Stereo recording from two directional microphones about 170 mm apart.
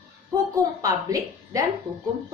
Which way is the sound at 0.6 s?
20° right (ahead or behind).